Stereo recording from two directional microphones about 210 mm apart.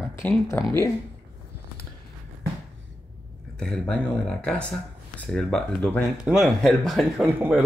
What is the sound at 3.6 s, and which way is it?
Speech, 5° left (ahead or behind).